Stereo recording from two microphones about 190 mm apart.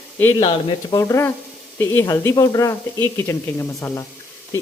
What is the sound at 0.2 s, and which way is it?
Speech, 10° left (ahead or behind).